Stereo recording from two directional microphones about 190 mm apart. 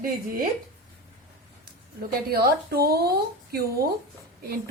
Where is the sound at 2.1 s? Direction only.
55° right (ahead or behind).